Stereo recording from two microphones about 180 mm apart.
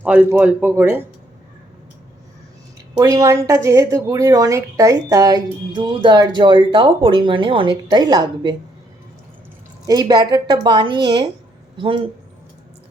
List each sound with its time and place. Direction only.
0.0 s a man's voice: 10° right (ahead or behind)
3.0 s a woman's voice: 20° right (ahead or behind)
9.8 s a woman's voice: 20° right (ahead or behind)